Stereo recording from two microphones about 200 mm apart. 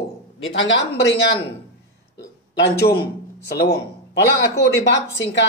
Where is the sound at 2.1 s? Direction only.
55° left (ahead or behind).